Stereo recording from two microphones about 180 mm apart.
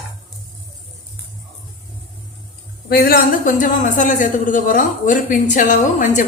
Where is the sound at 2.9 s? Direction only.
55° left (ahead or behind).